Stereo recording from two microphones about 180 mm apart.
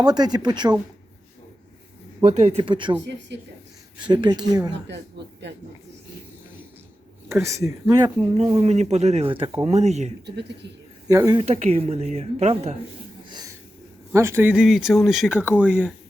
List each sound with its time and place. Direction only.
0.0 s speech: 20° right (ahead or behind)
2.2 s speech: 40° right (ahead or behind)
4.1 s speech: 25° right (ahead or behind)
7.3 s speech: 15° right (ahead or behind)
8.4 s speech: 35° right (ahead or behind)
10.2 s speech: 70° right (ahead or behind)
11.1 s speech: 20° right (ahead or behind)
11.3 s speech: 35° right (ahead or behind)
14.1 s speech: 15° right (ahead or behind)